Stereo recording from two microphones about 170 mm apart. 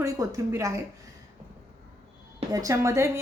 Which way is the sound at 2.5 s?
20° right (ahead or behind).